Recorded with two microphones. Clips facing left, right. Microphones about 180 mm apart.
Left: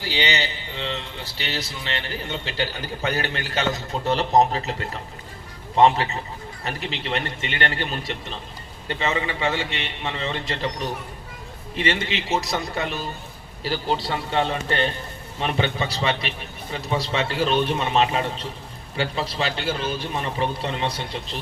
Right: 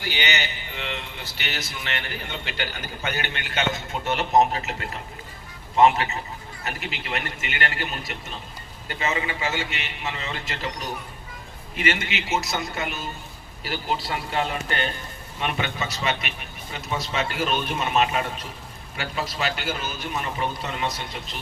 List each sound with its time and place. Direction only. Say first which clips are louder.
0.0 s a man's voice: left 3 dB; 30° left (ahead or behind)